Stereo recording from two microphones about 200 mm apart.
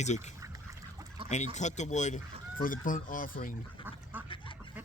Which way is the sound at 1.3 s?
35° left (ahead or behind).